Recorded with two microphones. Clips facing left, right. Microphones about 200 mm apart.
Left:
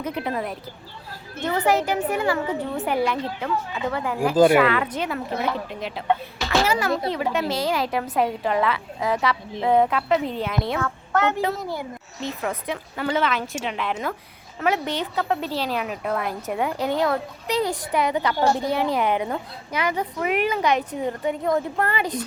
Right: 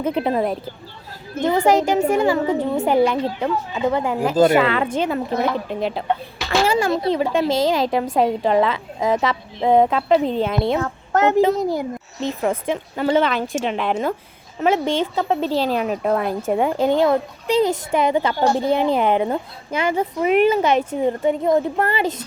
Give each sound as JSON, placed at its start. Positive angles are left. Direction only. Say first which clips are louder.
{"t": 0.0, "sound": "a woman's voice", "louder": "right 7 dB", "side_deg": -30}
{"t": 2.5, "sound": "a woman's voice", "louder": "right 6 dB", "side_deg": -40}
{"t": 2.8, "sound": "a woman's voice", "louder": "right 6 dB", "side_deg": -25}
{"t": 11.1, "sound": "a woman's voice", "louder": "right 7 dB", "side_deg": -40}
{"t": 12.4, "sound": "a woman's voice", "louder": "right 8 dB", "side_deg": -25}
{"t": 14.6, "sound": "a woman's voice", "louder": "right 5 dB", "side_deg": -25}